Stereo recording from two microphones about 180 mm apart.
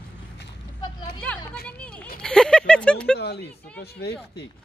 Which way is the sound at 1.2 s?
5° left (ahead or behind).